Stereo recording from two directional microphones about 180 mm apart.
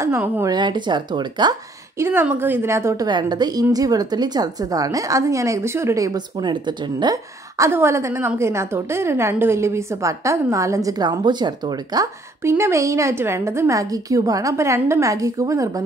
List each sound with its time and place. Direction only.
0.0 s a woman's voice: 15° right (ahead or behind)
2.0 s a woman's voice: 10° right (ahead or behind)